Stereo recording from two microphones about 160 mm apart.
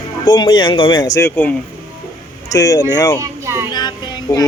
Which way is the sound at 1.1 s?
15° left (ahead or behind).